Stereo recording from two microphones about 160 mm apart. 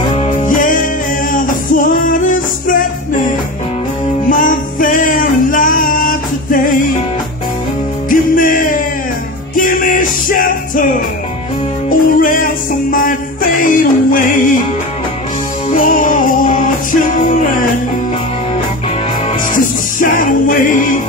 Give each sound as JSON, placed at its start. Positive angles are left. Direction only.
{"t": 0.4, "sound": "music", "side_deg": 55}
{"t": 4.3, "sound": "music", "side_deg": 60}
{"t": 8.1, "sound": "music", "side_deg": 60}
{"t": 15.7, "sound": "music", "side_deg": 55}
{"t": 19.5, "sound": "music", "side_deg": 55}